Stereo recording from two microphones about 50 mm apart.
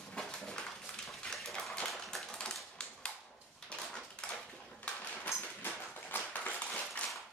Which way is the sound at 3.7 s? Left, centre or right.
Left.